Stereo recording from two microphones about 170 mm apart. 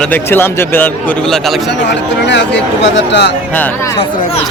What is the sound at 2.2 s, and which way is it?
Speech, 90° left.